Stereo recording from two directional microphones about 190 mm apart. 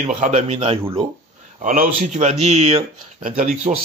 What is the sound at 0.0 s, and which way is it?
Speech, 40° right (ahead or behind).